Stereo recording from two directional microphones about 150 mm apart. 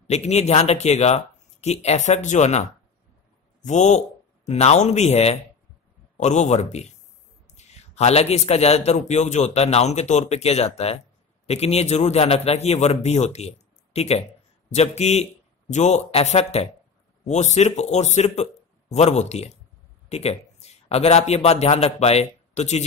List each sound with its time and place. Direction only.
0.0 s a man's voice: 45° left (ahead or behind)
3.6 s a man's voice: 50° left (ahead or behind)